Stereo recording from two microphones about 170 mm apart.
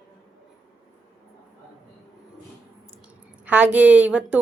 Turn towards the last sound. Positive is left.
turn(degrees=-10)  # may be behind; listen again after turning